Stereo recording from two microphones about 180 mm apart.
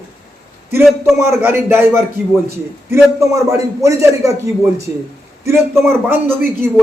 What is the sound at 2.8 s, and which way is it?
Speech, 15° right (ahead or behind).